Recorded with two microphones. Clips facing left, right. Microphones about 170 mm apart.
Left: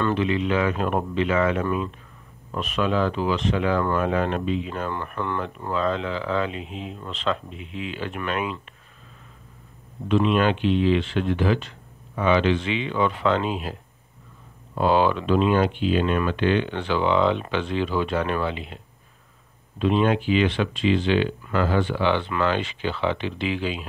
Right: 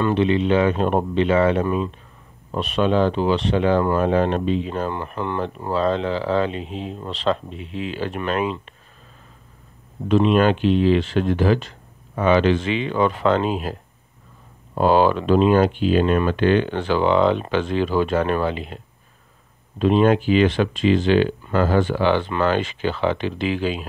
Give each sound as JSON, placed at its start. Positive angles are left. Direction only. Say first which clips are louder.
{"t": 0.1, "sound": "speech", "louder": "right 5 dB", "side_deg": -30}
{"t": 4.9, "sound": "speech", "louder": "right 2 dB", "side_deg": -20}
{"t": 5.4, "sound": "speech", "louder": "right 6 dB", "side_deg": -30}
{"t": 10.0, "sound": "speech", "louder": "right 4 dB", "side_deg": -40}
{"t": 14.8, "sound": "speech", "louder": "right 4 dB", "side_deg": -40}
{"t": 19.8, "sound": "speech", "louder": "right 4 dB", "side_deg": -40}